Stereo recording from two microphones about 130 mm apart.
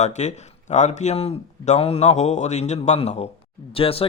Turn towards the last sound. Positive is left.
turn(degrees=45)  # may be behind; listen again after turning